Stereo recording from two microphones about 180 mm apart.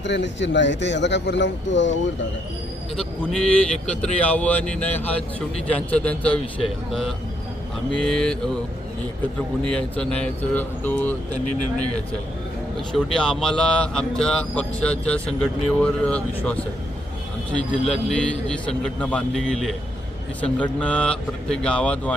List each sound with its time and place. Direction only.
0.0 s speech: 80° left
2.9 s speech: 5° left (ahead or behind)
7.9 s speech: 5° left (ahead or behind)
9.6 s speech: 5° left (ahead or behind)
12.9 s speech: 5° left (ahead or behind)